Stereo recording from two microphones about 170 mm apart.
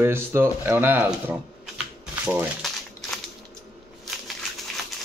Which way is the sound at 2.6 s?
Centre (ahead or behind).